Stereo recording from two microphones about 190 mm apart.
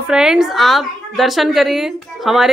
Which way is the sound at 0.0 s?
5° right (ahead or behind).